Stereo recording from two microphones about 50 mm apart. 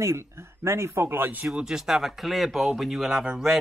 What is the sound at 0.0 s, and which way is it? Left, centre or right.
A man's voice, right.